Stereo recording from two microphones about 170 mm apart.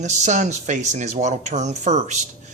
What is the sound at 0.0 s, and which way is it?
Speech, 45° right (ahead or behind).